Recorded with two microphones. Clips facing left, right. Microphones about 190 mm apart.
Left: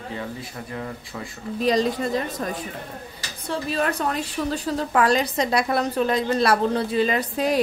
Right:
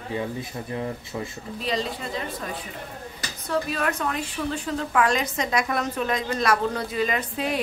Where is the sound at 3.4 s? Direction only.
30° left (ahead or behind).